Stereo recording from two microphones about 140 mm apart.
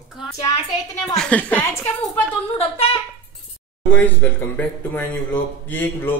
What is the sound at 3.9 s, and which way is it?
Speech, 10° left (ahead or behind).